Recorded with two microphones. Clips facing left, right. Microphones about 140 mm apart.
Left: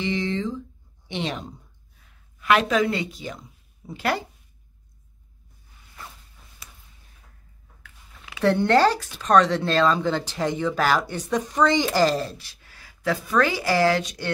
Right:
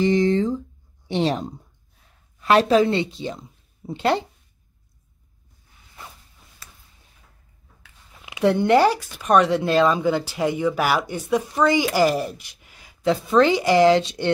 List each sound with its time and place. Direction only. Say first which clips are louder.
0.0 s a woman's voice: right 7 dB; 40° right (ahead or behind); by 4.3 s 25° right (ahead or behind)
8.3 s speech: right 2 dB; 15° right (ahead or behind)